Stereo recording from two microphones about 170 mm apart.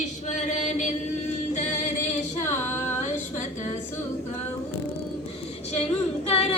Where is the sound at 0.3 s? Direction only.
45° left (ahead or behind).